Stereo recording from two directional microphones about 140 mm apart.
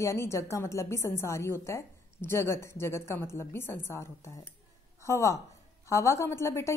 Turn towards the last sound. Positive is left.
turn(degrees=20)  # may be behind; listen again after turning